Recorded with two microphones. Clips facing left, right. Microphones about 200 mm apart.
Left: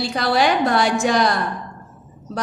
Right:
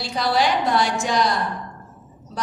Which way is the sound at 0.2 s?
60° left (ahead or behind).